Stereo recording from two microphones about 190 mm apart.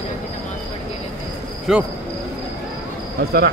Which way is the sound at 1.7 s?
5° right (ahead or behind).